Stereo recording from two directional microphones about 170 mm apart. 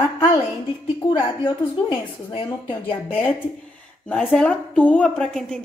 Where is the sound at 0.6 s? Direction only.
25° left (ahead or behind).